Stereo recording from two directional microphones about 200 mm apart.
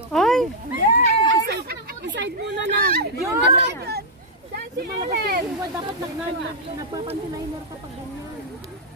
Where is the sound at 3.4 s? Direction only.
55° right (ahead or behind).